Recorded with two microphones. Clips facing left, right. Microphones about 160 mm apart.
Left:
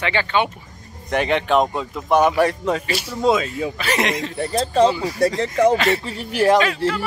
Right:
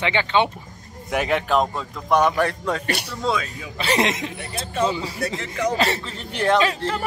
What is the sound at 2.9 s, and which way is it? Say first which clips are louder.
Speech: left 1 dB; 60° right (ahead or behind).